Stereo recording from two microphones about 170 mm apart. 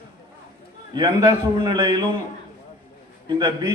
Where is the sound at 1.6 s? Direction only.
25° right (ahead or behind).